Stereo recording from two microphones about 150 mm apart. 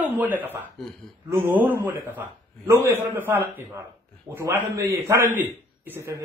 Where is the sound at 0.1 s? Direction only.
10° right (ahead or behind).